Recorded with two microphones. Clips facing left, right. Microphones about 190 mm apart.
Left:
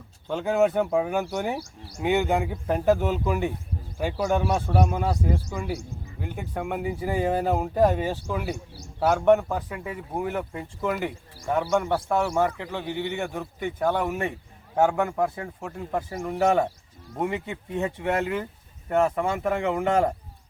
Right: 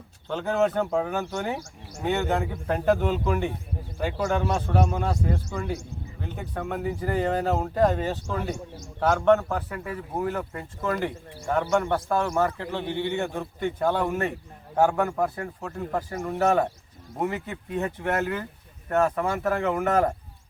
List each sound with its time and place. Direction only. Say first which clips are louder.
0.3 s speech: left 2 dB; 10° left (ahead or behind)